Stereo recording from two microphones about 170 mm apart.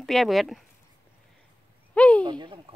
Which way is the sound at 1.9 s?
10° left (ahead or behind).